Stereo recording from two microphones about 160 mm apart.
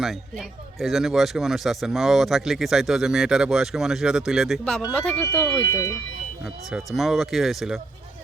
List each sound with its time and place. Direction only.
0.0 s speech: centre (ahead or behind)
4.8 s speech: 15° left (ahead or behind)
6.4 s speech: centre (ahead or behind)